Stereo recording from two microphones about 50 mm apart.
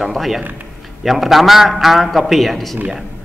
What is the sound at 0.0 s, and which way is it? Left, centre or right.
A man's voice, centre.